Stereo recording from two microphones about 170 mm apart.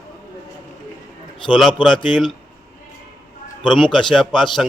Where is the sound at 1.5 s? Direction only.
Centre (ahead or behind).